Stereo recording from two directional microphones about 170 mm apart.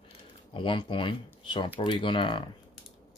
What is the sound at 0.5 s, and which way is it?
Speech, 30° left (ahead or behind).